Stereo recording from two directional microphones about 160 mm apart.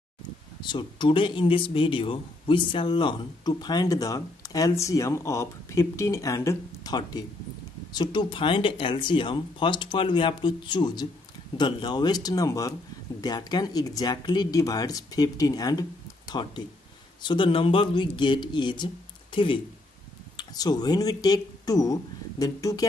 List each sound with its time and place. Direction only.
0.6 s a man's voice: 30° left (ahead or behind)